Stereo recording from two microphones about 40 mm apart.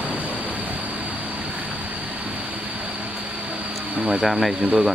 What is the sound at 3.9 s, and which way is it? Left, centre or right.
Speech, centre.